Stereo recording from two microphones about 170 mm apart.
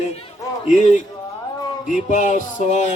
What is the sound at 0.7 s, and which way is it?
A man's voice, 45° left (ahead or behind).